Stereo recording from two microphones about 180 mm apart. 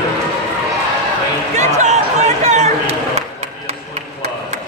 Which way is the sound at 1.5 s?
40° right (ahead or behind).